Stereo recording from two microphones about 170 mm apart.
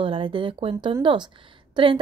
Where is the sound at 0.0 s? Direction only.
30° right (ahead or behind).